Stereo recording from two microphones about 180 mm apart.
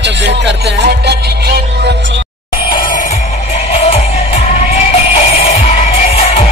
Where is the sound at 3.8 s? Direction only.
35° left (ahead or behind).